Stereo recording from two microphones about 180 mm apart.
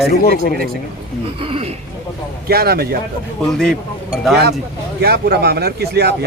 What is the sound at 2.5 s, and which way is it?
Speech, 60° right (ahead or behind).